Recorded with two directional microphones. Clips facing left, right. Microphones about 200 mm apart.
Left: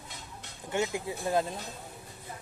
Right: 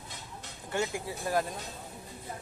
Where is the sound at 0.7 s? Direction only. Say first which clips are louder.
Left 2 dB; 20° left (ahead or behind).